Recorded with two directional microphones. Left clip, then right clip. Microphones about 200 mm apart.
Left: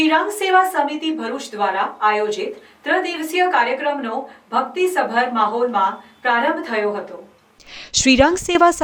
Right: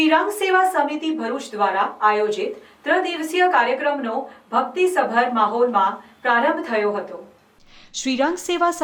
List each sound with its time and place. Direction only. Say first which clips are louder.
0.0 s a woman's voice: left 1 dB; centre (ahead or behind)
7.8 s speech: left 8 dB; 45° left (ahead or behind)